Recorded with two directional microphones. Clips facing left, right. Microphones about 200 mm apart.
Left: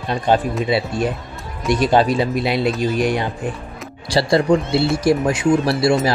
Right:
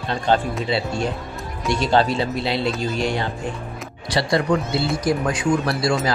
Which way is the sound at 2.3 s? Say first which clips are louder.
Left 4 dB; 25° right (ahead or behind).